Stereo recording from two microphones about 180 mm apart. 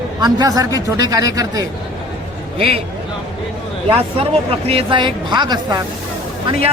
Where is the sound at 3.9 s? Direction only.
30° right (ahead or behind).